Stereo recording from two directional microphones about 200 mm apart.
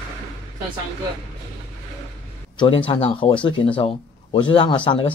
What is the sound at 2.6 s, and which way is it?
Speech, 25° left (ahead or behind).